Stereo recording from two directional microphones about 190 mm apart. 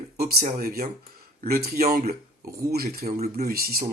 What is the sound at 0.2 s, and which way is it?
Speech, 55° right (ahead or behind).